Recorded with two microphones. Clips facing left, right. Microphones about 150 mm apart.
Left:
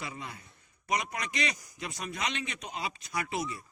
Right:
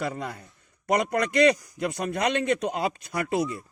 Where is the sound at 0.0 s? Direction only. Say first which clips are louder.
Right 10 dB; 55° right (ahead or behind).